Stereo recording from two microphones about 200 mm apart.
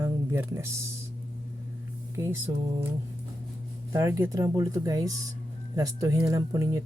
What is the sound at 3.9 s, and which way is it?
Speech, 15° right (ahead or behind).